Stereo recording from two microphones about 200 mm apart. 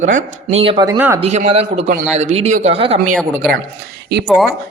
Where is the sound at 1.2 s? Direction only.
30° right (ahead or behind).